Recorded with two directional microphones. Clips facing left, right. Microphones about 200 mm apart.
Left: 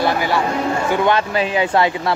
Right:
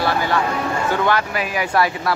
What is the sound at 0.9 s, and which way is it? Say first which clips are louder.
Speech: left 2 dB; 20° left (ahead or behind).